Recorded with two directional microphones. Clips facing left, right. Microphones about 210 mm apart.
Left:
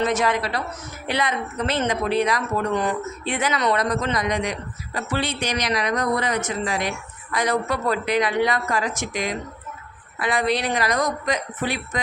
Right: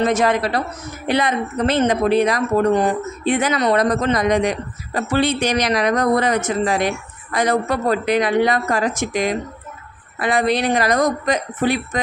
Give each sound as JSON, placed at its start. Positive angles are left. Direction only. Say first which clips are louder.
{"t": 0.0, "sound": "speech", "louder": "right 4 dB", "side_deg": -50}